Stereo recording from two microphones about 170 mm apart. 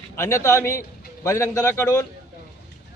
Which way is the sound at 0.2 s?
15° left (ahead or behind).